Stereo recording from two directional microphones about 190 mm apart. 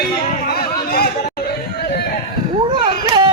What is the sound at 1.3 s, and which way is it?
Chatter, 55° left (ahead or behind).